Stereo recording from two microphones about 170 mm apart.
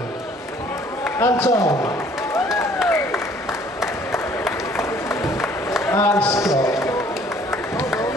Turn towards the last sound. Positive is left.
turn(degrees=15)  # may be behind; listen again after turning